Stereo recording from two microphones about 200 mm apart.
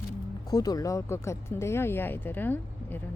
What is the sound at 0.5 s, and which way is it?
Speech, 20° left (ahead or behind).